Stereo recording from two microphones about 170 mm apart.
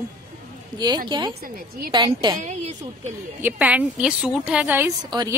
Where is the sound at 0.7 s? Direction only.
25° right (ahead or behind).